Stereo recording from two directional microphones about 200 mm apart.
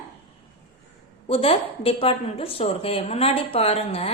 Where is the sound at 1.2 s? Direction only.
30° left (ahead or behind).